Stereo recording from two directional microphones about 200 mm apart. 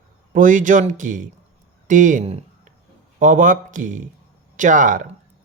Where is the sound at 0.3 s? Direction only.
40° right (ahead or behind).